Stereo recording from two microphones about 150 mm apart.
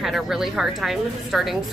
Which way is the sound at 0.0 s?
Centre (ahead or behind).